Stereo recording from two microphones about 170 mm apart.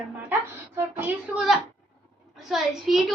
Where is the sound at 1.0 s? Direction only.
5° right (ahead or behind).